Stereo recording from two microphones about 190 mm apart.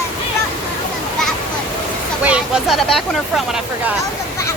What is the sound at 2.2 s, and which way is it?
Speech, 5° right (ahead or behind).